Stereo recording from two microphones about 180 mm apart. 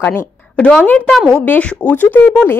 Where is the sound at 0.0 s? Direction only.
10° left (ahead or behind).